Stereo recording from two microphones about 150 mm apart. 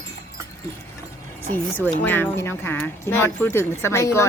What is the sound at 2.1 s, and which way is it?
Speech, 15° left (ahead or behind).